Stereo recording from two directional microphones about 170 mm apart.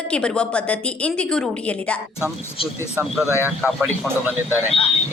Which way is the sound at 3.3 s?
15° left (ahead or behind).